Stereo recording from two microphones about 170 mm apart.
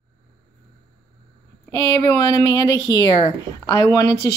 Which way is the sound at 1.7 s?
20° left (ahead or behind).